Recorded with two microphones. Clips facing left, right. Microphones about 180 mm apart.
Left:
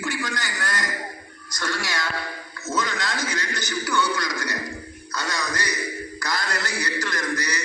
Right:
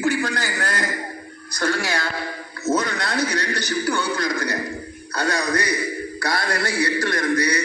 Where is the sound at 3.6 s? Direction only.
60° right (ahead or behind).